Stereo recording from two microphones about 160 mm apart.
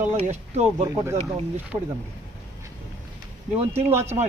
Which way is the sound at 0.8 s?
15° right (ahead or behind).